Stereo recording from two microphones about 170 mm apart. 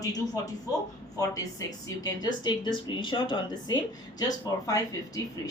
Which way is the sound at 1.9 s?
25° left (ahead or behind).